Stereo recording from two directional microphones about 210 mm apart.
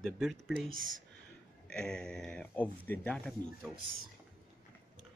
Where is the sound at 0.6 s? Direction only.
40° right (ahead or behind).